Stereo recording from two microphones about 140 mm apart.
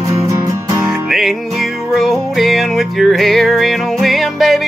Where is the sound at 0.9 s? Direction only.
Centre (ahead or behind).